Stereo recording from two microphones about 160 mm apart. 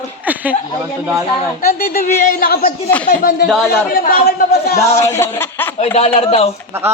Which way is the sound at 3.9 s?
70° left (ahead or behind).